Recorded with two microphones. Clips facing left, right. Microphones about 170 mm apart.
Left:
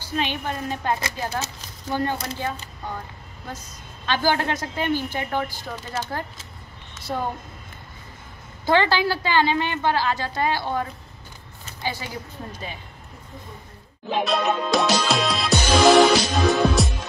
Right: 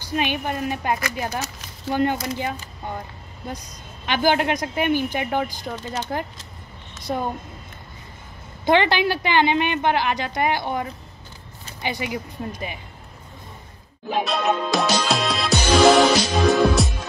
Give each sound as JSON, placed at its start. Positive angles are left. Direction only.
{"t": 0.1, "sound": "a woman's voice", "side_deg": -15}
{"t": 3.4, "sound": "a woman's voice", "side_deg": -15}
{"t": 8.6, "sound": "a woman's voice", "side_deg": -20}
{"t": 14.2, "sound": "music", "side_deg": 0}